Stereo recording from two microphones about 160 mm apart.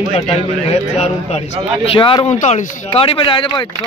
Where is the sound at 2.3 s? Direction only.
50° left (ahead or behind).